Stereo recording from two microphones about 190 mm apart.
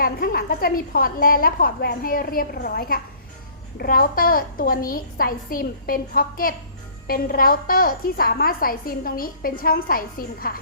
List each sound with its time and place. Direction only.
0.0 s a woman's voice: 50° left (ahead or behind)